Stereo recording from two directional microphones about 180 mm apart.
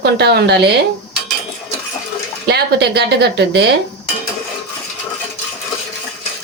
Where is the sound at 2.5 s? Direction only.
65° right (ahead or behind).